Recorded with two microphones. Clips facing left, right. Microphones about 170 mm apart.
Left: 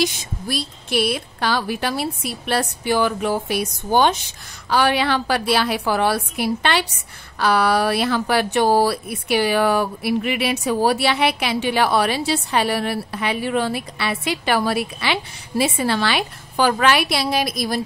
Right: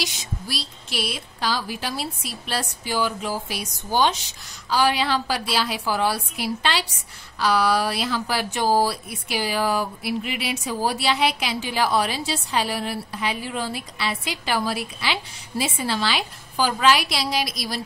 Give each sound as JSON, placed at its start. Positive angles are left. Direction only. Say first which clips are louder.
{"t": 0.0, "sound": "speech", "louder": "left 8 dB", "side_deg": 50}